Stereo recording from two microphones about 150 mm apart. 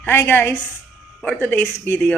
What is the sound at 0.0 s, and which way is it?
Speech, 15° left (ahead or behind).